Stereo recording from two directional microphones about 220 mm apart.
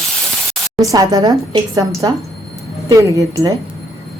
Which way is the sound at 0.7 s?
15° right (ahead or behind).